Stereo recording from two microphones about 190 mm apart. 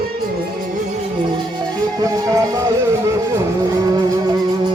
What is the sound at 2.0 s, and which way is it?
Music, 20° right (ahead or behind).